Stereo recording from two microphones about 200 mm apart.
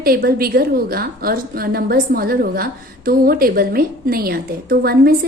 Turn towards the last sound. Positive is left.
turn(degrees=-50)  # may be behind; listen again after turning